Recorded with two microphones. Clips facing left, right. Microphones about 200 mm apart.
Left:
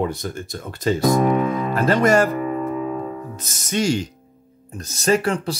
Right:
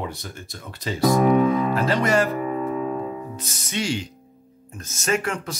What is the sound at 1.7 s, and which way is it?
Speech, 50° left (ahead or behind).